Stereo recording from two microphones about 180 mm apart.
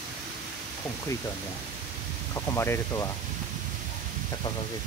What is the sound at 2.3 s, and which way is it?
Speech, 15° left (ahead or behind).